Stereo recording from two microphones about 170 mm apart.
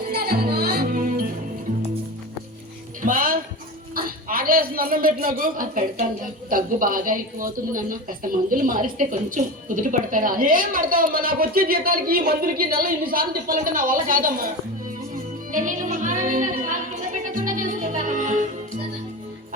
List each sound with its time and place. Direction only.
0.1 s music: 65° right (ahead or behind)
3.0 s music: 55° right (ahead or behind)
3.9 s a man's voice: 60° right (ahead or behind)
15.1 s music: 50° right (ahead or behind)